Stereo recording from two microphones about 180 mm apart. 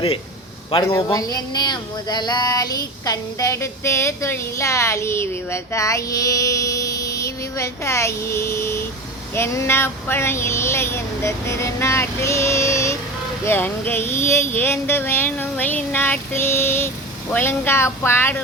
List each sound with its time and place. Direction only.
0.9 s speech: 15° left (ahead or behind)